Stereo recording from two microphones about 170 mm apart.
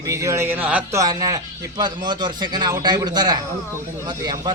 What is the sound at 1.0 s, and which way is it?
Speech, 20° right (ahead or behind).